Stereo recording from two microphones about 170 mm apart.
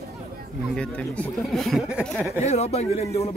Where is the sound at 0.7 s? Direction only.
5° left (ahead or behind).